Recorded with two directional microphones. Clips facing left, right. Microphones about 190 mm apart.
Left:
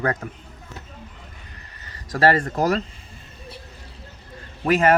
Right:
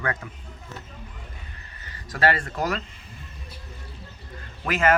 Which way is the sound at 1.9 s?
40° left (ahead or behind).